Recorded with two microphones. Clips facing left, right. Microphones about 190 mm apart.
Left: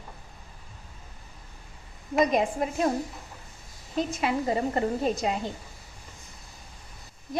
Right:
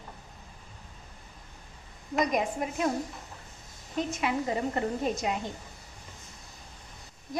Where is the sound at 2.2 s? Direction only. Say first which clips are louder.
Left 4 dB; 30° left (ahead or behind).